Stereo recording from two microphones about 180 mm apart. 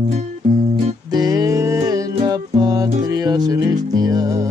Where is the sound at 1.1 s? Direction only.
20° right (ahead or behind).